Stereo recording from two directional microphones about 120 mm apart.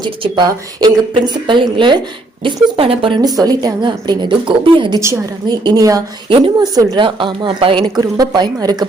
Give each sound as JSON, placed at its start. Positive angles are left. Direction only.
{"t": 0.0, "sound": "a woman's voice", "side_deg": -35}
{"t": 3.2, "sound": "a woman's voice", "side_deg": -35}
{"t": 4.9, "sound": "a woman's voice", "side_deg": -25}
{"t": 7.9, "sound": "a woman's voice", "side_deg": -35}